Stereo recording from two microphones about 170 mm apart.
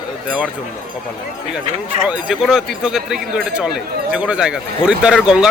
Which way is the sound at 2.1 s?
5° right (ahead or behind).